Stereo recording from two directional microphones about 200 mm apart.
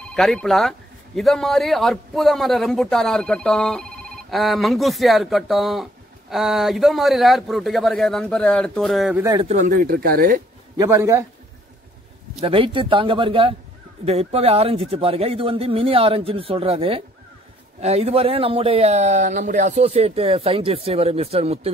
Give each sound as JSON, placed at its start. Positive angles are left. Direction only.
{"t": 0.1, "sound": "speech", "side_deg": 5}
{"t": 9.2, "sound": "speech", "side_deg": -20}
{"t": 9.5, "sound": "speech", "side_deg": -40}
{"t": 10.8, "sound": "a man's voice", "side_deg": -15}
{"t": 12.4, "sound": "speech", "side_deg": -25}